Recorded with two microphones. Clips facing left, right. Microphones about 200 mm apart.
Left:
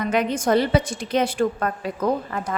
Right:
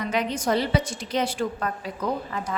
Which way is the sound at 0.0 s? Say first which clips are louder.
Left 4 dB; 55° left (ahead or behind).